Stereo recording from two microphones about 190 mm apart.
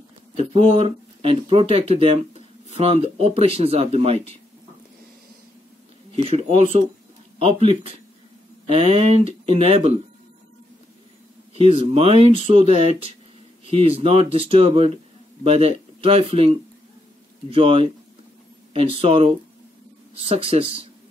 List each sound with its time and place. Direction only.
0.4 s speech: 30° right (ahead or behind)
6.1 s speech: 30° right (ahead or behind)
11.6 s speech: 30° right (ahead or behind)